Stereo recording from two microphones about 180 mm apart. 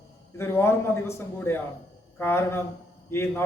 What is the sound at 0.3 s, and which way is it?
A man's voice, 15° left (ahead or behind).